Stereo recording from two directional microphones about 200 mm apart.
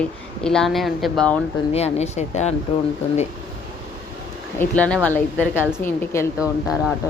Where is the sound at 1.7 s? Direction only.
30° left (ahead or behind).